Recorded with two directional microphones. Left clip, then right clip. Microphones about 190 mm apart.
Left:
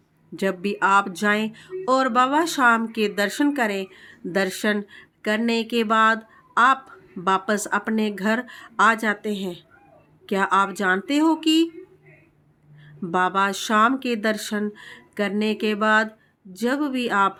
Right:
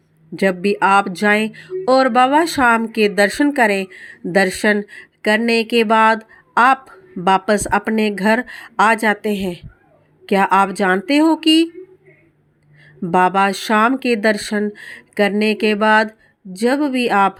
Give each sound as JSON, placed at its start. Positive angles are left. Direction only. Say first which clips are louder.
{"t": 0.3, "sound": "speech", "louder": "right 8 dB", "side_deg": -25}
{"t": 13.0, "sound": "speech", "louder": "right 7 dB", "side_deg": -30}